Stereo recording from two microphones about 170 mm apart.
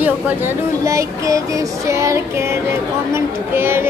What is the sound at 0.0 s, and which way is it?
Speech, 10° right (ahead or behind).